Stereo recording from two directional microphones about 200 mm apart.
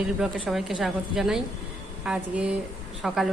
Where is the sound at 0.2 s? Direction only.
Centre (ahead or behind).